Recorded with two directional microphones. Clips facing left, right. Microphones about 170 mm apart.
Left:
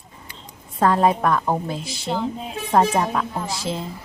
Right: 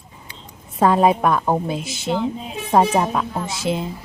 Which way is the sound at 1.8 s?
Centre (ahead or behind).